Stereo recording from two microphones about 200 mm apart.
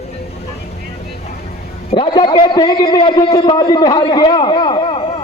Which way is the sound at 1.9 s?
25° left (ahead or behind).